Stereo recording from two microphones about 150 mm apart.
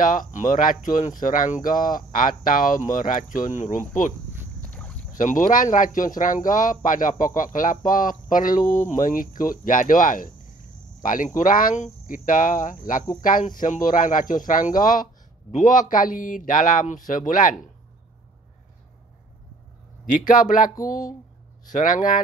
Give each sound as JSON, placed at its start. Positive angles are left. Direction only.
{"t": 0.0, "sound": "speech", "side_deg": 65}
{"t": 4.6, "sound": "boat", "side_deg": 10}
{"t": 5.1, "sound": "speech", "side_deg": 60}
{"t": 20.2, "sound": "speech", "side_deg": 60}
{"t": 20.7, "sound": "speech", "side_deg": 20}
{"t": 21.7, "sound": "speech", "side_deg": 65}